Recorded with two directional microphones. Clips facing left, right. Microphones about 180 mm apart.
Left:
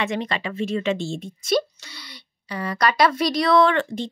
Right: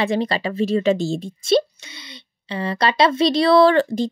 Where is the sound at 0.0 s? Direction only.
35° right (ahead or behind).